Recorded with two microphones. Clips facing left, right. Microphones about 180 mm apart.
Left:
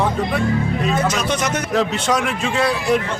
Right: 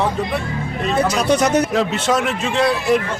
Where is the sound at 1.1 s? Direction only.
35° right (ahead or behind).